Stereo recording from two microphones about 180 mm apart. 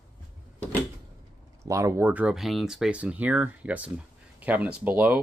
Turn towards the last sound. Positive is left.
turn(degrees=-10)  # may be behind; listen again after turning